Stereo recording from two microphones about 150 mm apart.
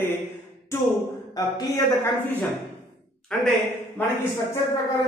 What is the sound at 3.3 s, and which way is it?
Speech, 5° left (ahead or behind).